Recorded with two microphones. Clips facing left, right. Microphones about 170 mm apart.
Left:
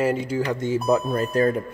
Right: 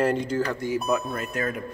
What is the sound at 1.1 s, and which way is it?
Speech, 35° left (ahead or behind).